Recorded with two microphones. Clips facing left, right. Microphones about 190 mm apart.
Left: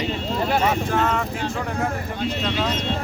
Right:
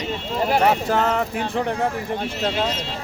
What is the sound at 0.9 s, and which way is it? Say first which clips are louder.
Speech: right 2 dB; 35° right (ahead or behind).